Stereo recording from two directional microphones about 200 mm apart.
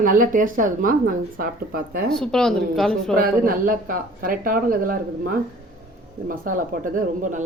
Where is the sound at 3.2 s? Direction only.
45° right (ahead or behind).